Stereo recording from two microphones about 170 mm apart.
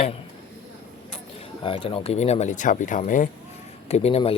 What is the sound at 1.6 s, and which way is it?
Speech, 30° left (ahead or behind).